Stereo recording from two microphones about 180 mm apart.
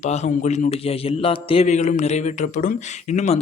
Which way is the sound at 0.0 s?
40° left (ahead or behind).